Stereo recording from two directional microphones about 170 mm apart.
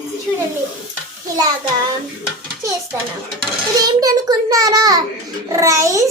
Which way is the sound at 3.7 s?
20° right (ahead or behind).